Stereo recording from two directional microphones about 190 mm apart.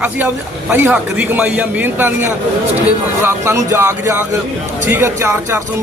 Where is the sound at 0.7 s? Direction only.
10° right (ahead or behind).